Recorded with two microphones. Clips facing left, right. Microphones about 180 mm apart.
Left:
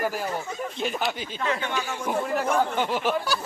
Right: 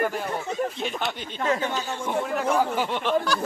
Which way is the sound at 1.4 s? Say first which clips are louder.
Right 3 dB; 40° right (ahead or behind).